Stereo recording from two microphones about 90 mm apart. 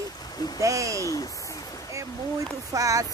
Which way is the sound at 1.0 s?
40° left (ahead or behind).